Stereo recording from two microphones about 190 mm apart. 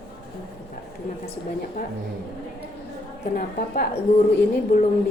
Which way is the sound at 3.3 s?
50° left (ahead or behind).